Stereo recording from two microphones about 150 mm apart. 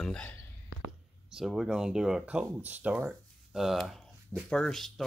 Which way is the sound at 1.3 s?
Centre (ahead or behind).